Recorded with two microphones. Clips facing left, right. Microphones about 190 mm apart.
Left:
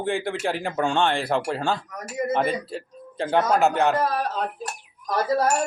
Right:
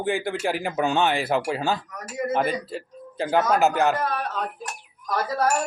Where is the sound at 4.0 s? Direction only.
35° left (ahead or behind).